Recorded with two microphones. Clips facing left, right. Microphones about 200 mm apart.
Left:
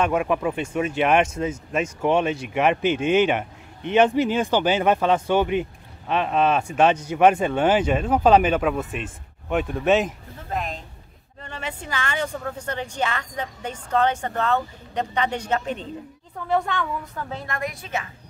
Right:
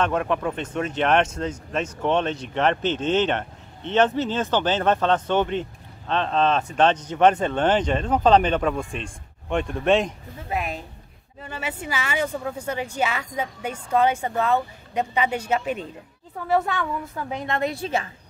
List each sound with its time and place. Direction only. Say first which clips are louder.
0.0 s speech: left 1 dB; 10° left (ahead or behind)
10.5 s a woman's voice: right 1 dB; 10° right (ahead or behind); by 18.1 s 30° right (ahead or behind)